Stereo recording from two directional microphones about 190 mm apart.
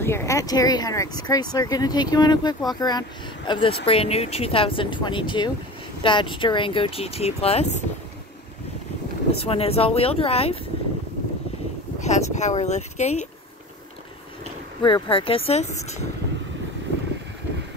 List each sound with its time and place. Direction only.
0.0 s speech: 15° left (ahead or behind); by 7.8 s 30° left (ahead or behind)
9.3 s speech: 30° left (ahead or behind)
12.0 s speech: 35° left (ahead or behind)
14.8 s speech: 25° left (ahead or behind)